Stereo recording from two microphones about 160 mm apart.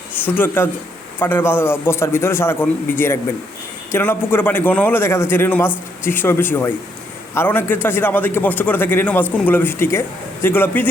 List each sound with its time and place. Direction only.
0.1 s a man's voice: 10° left (ahead or behind)